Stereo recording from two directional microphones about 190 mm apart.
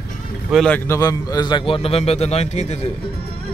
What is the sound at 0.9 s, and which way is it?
A man's voice, 20° left (ahead or behind).